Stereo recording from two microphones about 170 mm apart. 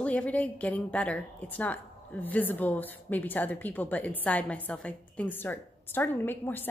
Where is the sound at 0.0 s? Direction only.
10° left (ahead or behind).